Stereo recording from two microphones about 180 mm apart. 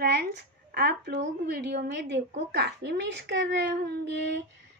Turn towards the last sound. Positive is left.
turn(degrees=-75)  # may be behind; listen again after turning